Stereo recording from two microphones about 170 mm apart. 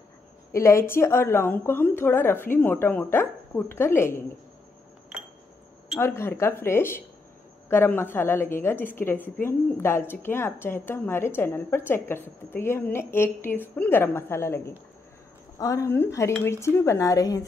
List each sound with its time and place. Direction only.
0.5 s a woman's voice: 15° left (ahead or behind)
5.9 s a woman's voice: 15° left (ahead or behind)